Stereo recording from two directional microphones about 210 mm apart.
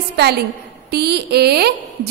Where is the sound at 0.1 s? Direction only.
50° right (ahead or behind).